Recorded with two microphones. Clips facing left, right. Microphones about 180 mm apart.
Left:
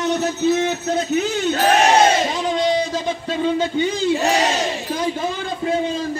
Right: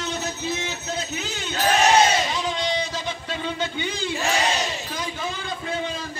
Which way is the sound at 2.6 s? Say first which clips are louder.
Left 7 dB; 45° left (ahead or behind).